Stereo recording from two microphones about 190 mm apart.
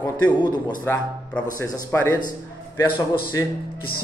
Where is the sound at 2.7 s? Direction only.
25° left (ahead or behind).